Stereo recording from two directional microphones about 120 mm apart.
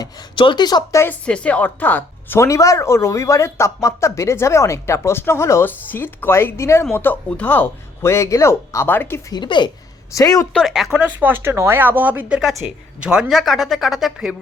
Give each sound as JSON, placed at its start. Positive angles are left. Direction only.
{"t": 0.0, "sound": "speech", "side_deg": 40}
{"t": 1.2, "sound": "speech", "side_deg": 10}
{"t": 9.3, "sound": "speech", "side_deg": 40}
{"t": 10.2, "sound": "speech", "side_deg": 25}
{"t": 10.5, "sound": "speech", "side_deg": 0}
{"t": 11.2, "sound": "a woman's voice", "side_deg": -15}